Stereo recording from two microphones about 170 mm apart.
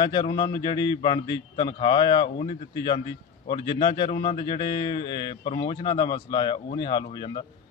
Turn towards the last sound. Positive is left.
turn(degrees=25)  # may be behind; listen again after turning